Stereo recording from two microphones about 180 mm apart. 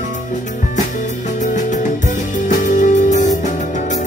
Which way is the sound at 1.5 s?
45° left (ahead or behind).